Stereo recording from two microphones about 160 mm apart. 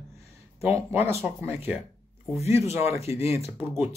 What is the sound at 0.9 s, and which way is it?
Speech, 15° right (ahead or behind).